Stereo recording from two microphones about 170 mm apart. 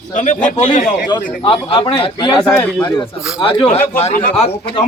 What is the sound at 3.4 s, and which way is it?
Speech, 35° left (ahead or behind).